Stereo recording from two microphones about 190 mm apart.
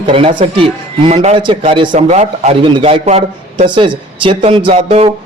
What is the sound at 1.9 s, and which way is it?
Speech, 40° right (ahead or behind).